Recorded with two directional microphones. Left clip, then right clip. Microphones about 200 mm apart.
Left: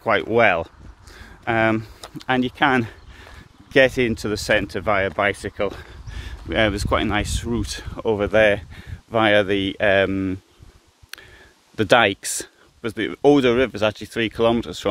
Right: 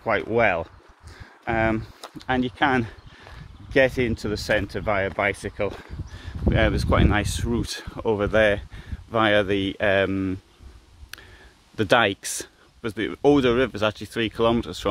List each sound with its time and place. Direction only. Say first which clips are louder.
0.0 s speech: left 4 dB; 40° left (ahead or behind)
1.1 s a sound: left 4 dB; 40° left (ahead or behind)
2.1 s speech: left 3 dB; 35° left (ahead or behind)
6.6 s speech: left 3 dB; 15° left (ahead or behind)
11.1 s a sound: left 3 dB; 20° left (ahead or behind)
11.7 s speech: left 3 dB; 20° left (ahead or behind)